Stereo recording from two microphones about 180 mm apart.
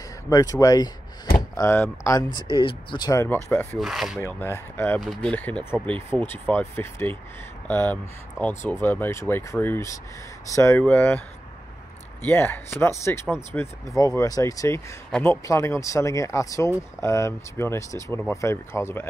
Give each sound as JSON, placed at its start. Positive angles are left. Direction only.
{"t": 0.3, "sound": "speech", "side_deg": 20}
{"t": 3.8, "sound": "speech", "side_deg": 0}
{"t": 4.2, "sound": "speech", "side_deg": 10}
{"t": 12.3, "sound": "speech", "side_deg": 15}